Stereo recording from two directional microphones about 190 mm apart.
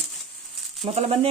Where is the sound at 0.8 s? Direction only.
30° right (ahead or behind).